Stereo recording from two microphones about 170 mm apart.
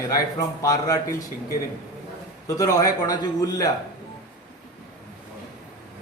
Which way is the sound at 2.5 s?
20° left (ahead or behind).